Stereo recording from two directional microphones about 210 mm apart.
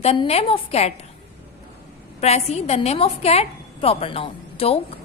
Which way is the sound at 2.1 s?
30° left (ahead or behind).